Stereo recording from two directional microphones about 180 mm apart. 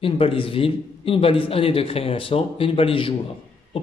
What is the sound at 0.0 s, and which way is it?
Speech, 30° left (ahead or behind).